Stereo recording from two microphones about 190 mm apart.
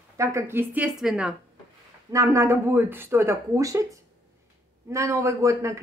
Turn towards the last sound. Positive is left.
turn(degrees=-15)  # may be behind; listen again after turning